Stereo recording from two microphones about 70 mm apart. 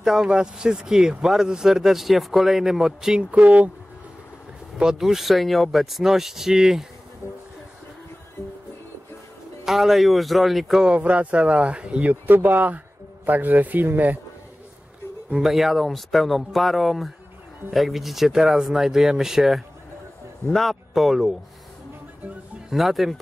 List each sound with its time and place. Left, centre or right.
0.0 s speech: centre
4.7 s speech: centre
9.7 s speech: centre
10.9 s speech: centre
15.4 s speech: centre
22.7 s speech: centre